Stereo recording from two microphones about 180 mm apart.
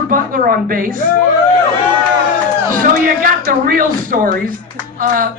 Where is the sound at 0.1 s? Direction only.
50° right (ahead or behind).